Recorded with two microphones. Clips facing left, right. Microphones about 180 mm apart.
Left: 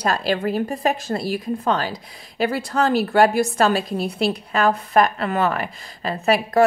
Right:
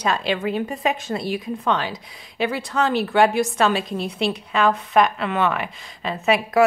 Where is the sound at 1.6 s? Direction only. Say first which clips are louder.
Left 1 dB; 40° left (ahead or behind).